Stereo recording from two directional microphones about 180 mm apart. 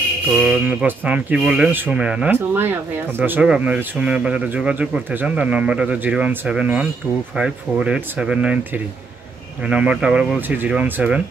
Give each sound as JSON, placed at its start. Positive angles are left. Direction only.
{"t": 0.3, "sound": "speech", "side_deg": -5}